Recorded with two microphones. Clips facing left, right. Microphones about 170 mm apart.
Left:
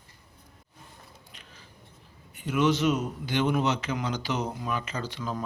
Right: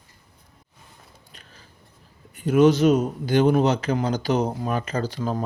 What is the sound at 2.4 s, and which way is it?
Speech, 40° right (ahead or behind).